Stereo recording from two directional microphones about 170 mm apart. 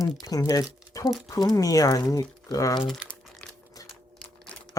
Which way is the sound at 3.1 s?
5° left (ahead or behind).